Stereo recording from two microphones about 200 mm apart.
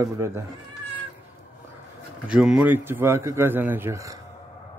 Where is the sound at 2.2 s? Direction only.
5° right (ahead or behind).